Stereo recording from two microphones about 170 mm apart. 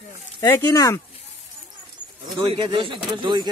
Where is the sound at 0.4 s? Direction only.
15° left (ahead or behind).